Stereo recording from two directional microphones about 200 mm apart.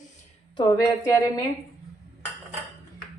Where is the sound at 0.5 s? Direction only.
20° left (ahead or behind).